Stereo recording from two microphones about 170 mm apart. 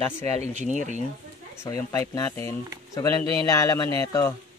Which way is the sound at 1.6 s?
20° left (ahead or behind).